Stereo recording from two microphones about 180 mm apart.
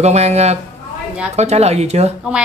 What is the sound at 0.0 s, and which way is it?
Speech, 35° right (ahead or behind).